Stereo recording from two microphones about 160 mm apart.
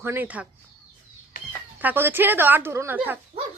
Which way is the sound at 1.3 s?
65° left (ahead or behind).